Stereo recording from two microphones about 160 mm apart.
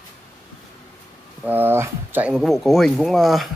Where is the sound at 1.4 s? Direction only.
10° right (ahead or behind).